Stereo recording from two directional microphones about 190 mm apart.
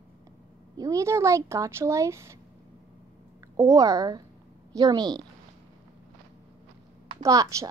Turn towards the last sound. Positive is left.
turn(degrees=-15)  # may be behind; listen again after turning